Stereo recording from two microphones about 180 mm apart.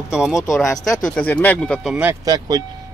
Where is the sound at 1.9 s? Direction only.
15° right (ahead or behind).